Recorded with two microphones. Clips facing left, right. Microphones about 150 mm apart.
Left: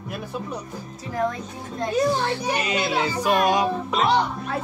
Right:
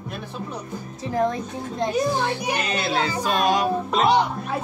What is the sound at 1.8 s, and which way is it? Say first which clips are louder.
Music: left 1 dB; 20° right (ahead or behind).